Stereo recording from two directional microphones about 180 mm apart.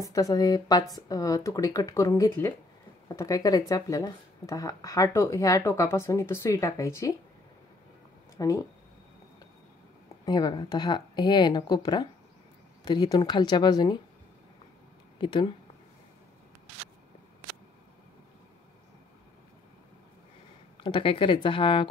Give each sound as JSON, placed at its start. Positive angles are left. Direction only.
{"t": 0.0, "sound": "speech", "side_deg": 20}
{"t": 8.4, "sound": "speech", "side_deg": 20}
{"t": 10.2, "sound": "speech", "side_deg": 20}
{"t": 15.1, "sound": "speech", "side_deg": 25}
{"t": 20.8, "sound": "speech", "side_deg": 30}